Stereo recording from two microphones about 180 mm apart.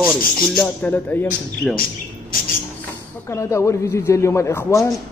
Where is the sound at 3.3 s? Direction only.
15° left (ahead or behind).